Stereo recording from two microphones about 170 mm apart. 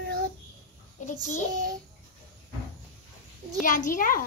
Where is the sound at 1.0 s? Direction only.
50° left (ahead or behind).